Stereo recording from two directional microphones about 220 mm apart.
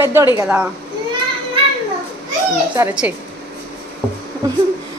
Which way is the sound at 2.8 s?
5° right (ahead or behind).